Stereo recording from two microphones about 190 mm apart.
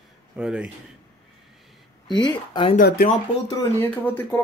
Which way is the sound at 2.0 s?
25° left (ahead or behind).